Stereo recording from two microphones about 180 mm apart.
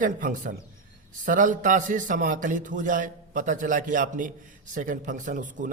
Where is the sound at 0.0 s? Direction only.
45° right (ahead or behind).